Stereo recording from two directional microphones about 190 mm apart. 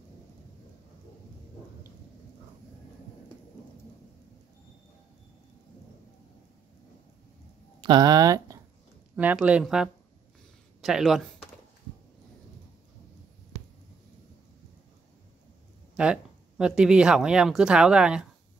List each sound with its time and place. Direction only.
7.8 s speech: 20° right (ahead or behind); by 11.2 s centre (ahead or behind)
16.0 s speech: 5° right (ahead or behind)